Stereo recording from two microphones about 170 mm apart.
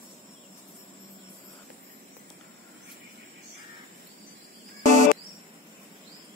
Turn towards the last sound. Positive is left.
turn(degrees=45)  # may be behind; listen again after turning